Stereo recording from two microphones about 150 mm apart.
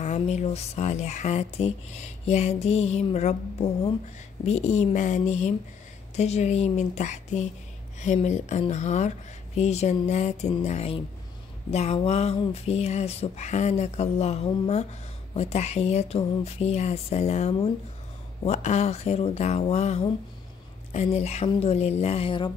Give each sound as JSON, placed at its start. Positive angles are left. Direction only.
{"t": 0.0, "sound": "speech", "side_deg": 50}